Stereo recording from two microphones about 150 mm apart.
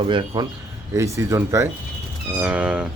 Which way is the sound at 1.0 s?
20° right (ahead or behind).